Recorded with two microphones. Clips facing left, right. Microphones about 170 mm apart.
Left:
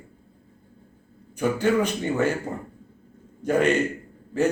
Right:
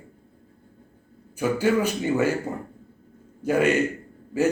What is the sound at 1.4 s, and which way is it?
Speech, 10° right (ahead or behind).